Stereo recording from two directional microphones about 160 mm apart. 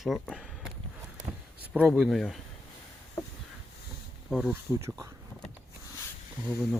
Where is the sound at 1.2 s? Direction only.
50° right (ahead or behind).